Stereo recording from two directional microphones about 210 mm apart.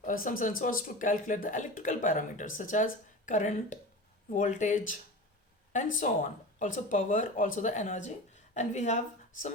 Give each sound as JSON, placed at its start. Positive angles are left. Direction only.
{"t": 0.0, "sound": "speech", "side_deg": 40}